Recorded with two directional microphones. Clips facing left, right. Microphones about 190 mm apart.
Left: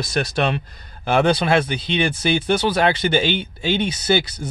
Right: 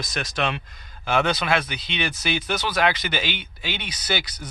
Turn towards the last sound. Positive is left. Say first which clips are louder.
# left 9 dB
turn(degrees=25)  # may be behind; listen again after turning